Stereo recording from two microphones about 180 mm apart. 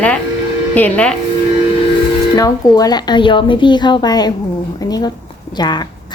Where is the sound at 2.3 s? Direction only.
20° left (ahead or behind).